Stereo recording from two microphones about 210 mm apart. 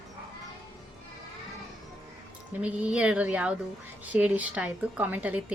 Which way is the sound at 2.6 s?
5° right (ahead or behind).